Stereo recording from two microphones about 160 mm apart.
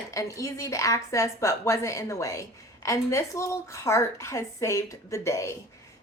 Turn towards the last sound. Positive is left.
turn(degrees=20)  # may be behind; listen again after turning